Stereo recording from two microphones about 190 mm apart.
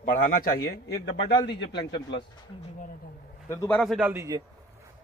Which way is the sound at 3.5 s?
10° left (ahead or behind).